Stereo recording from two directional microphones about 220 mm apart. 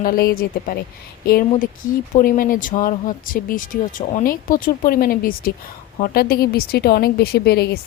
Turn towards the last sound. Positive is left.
turn(degrees=45)  # may be behind; listen again after turning